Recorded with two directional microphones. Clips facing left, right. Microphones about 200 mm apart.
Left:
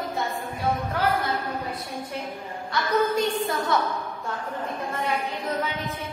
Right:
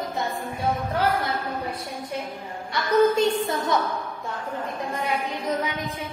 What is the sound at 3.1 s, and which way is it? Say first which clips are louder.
Speech: right 2 dB; 25° right (ahead or behind).